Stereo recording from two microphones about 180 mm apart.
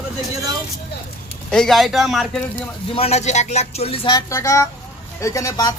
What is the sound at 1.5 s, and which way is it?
Speech, 5° left (ahead or behind).